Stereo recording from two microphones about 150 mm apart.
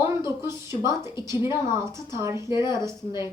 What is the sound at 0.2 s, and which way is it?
A woman's voice, 20° right (ahead or behind).